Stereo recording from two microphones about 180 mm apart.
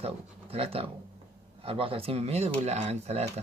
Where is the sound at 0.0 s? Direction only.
35° right (ahead or behind).